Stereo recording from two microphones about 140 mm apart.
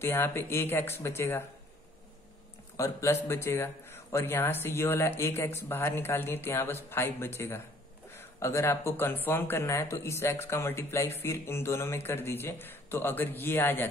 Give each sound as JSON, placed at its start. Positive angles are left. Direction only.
{"t": 0.0, "sound": "speech", "side_deg": 15}
{"t": 2.8, "sound": "speech", "side_deg": 20}